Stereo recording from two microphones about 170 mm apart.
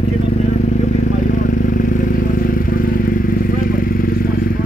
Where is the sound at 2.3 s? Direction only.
55° left (ahead or behind).